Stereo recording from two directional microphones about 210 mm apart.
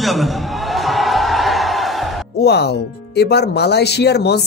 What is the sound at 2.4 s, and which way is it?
Speech, 50° left (ahead or behind).